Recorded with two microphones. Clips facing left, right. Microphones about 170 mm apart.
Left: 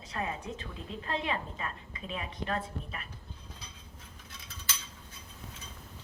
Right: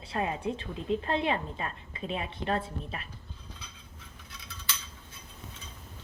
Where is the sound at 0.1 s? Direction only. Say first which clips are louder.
Right 5 dB; 30° right (ahead or behind).